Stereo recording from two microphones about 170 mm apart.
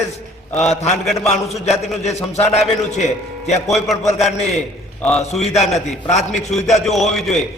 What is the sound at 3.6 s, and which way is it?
Speech, centre (ahead or behind).